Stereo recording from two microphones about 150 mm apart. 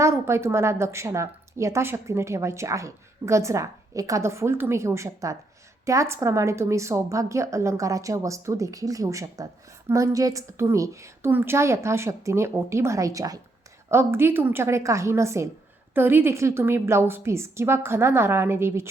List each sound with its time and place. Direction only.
0.0 s a woman's voice: 20° right (ahead or behind)